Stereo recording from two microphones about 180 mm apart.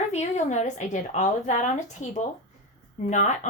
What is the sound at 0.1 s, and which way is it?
A woman's voice, 40° left (ahead or behind).